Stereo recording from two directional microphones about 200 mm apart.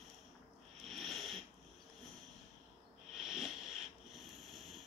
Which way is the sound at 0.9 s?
Centre (ahead or behind).